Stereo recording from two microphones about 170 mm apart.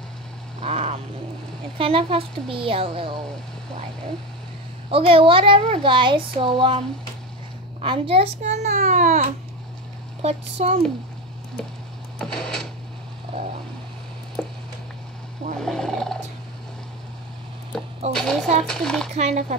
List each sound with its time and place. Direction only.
0.6 s a sound: 35° right (ahead or behind)
1.8 s a child's voice: 35° right (ahead or behind)
4.9 s a child's voice: 30° right (ahead or behind)
7.8 s a child's voice: 30° right (ahead or behind)
12.2 s speech: 5° left (ahead or behind)
14.4 s a sound: 5° left (ahead or behind)
15.6 s speech: 5° left (ahead or behind)
18.1 s speech: 5° left (ahead or behind)
19.1 s a child's voice: 40° right (ahead or behind)